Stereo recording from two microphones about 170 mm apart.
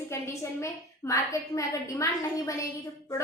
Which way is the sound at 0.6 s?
20° left (ahead or behind).